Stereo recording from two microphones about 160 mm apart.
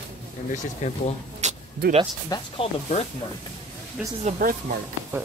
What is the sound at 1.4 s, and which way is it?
Vehicle, 45° right (ahead or behind).